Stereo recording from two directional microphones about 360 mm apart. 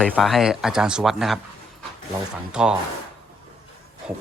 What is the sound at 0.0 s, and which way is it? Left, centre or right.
Speech, centre.